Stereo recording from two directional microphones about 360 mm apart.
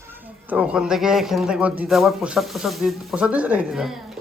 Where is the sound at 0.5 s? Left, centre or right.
Centre.